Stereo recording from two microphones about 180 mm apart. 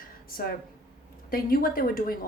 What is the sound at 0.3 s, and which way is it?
A woman's voice, 55° left (ahead or behind).